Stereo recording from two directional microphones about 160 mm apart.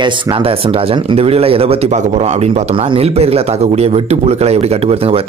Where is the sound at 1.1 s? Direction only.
40° right (ahead or behind).